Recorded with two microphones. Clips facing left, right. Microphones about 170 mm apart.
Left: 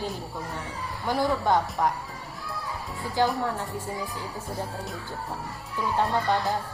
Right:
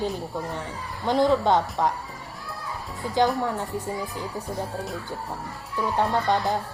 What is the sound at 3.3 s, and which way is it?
Speech, 20° right (ahead or behind).